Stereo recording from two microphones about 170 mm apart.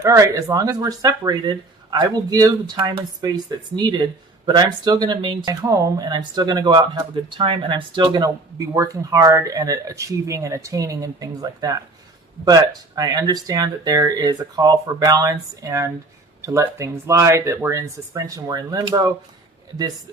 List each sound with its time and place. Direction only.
0.0 s speech: 20° right (ahead or behind)
13.0 s speech: 20° right (ahead or behind)